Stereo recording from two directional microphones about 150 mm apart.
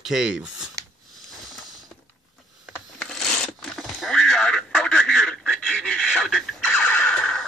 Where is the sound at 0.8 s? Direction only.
20° right (ahead or behind).